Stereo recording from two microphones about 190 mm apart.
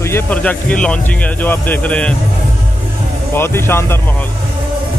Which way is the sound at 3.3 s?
10° left (ahead or behind).